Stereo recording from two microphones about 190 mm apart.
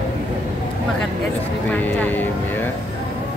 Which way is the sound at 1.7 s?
10° left (ahead or behind).